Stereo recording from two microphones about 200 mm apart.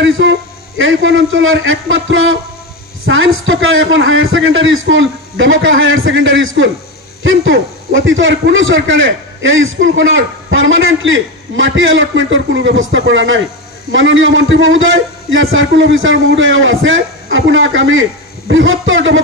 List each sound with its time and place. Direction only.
0.7 s a man's voice: 75° right (ahead or behind)